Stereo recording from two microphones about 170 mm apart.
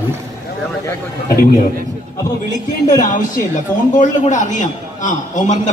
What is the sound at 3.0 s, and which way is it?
A man's voice, 50° left (ahead or behind).